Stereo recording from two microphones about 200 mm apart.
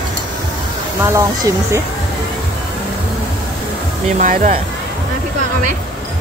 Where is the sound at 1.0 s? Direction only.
15° right (ahead or behind).